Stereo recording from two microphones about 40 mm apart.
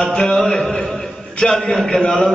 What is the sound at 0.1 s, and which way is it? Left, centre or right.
Music, centre.